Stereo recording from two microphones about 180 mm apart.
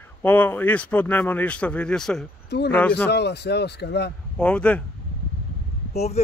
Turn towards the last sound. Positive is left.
turn(degrees=35)  # may be behind; listen again after turning